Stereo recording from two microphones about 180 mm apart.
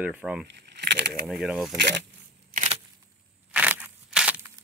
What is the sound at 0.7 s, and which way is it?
Speech, 70° right (ahead or behind).